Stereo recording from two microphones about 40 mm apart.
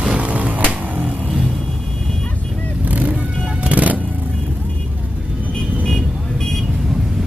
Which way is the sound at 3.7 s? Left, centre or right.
Right.